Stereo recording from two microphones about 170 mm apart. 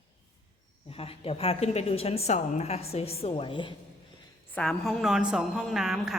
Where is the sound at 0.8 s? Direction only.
35° left (ahead or behind).